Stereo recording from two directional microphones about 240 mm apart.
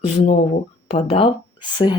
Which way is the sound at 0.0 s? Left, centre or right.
Left.